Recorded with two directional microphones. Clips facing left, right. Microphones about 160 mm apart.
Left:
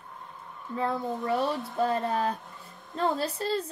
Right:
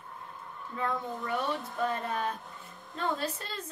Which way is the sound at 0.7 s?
35° left (ahead or behind).